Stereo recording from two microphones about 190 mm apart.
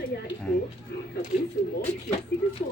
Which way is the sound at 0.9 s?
60° left (ahead or behind).